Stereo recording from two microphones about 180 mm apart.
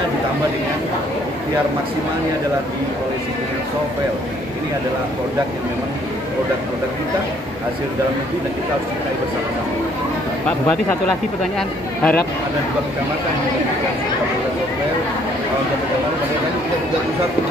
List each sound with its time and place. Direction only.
12.0 s speech: 10° left (ahead or behind)